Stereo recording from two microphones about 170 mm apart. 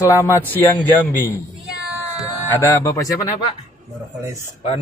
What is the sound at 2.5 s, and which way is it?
Speech, 15° left (ahead or behind).